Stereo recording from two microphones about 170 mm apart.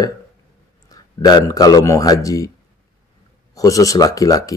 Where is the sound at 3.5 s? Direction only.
20° left (ahead or behind).